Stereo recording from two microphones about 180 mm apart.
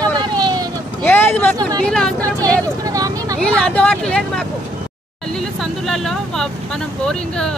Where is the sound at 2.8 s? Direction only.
20° right (ahead or behind).